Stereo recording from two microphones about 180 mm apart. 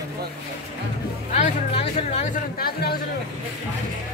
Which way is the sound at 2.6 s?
60° left (ahead or behind).